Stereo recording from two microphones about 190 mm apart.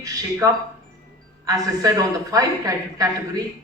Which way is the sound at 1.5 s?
20° right (ahead or behind).